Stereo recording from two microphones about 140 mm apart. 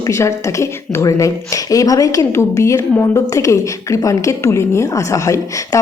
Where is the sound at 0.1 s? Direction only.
20° left (ahead or behind).